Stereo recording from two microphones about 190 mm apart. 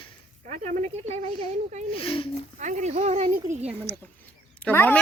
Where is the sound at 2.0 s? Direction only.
30° left (ahead or behind).